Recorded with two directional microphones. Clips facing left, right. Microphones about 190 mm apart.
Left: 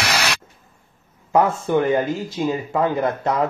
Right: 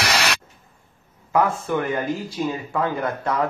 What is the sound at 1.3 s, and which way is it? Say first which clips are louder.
Speech: left 3 dB; 25° left (ahead or behind).